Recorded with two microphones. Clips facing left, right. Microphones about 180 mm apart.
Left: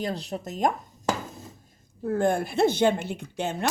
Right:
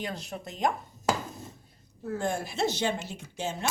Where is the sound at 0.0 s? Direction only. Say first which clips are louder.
Left 6 dB; 35° left (ahead or behind).